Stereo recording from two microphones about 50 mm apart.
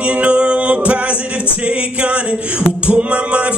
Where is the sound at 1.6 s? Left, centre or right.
Right.